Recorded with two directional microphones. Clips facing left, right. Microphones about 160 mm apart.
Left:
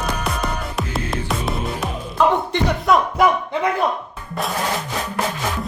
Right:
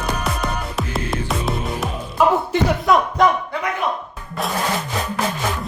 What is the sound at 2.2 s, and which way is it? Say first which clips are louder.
Speech: right 1 dB; 10° right (ahead or behind).